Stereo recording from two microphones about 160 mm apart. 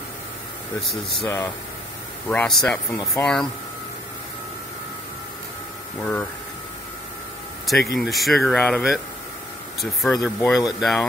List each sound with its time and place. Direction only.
1.2 s speech: 20° left (ahead or behind)
2.2 s speech: centre (ahead or behind)
7.6 s speech: centre (ahead or behind)